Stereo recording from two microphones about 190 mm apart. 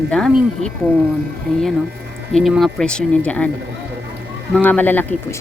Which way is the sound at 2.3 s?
Centre (ahead or behind).